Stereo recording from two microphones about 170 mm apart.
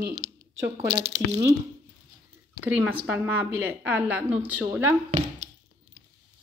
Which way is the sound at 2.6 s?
10° right (ahead or behind).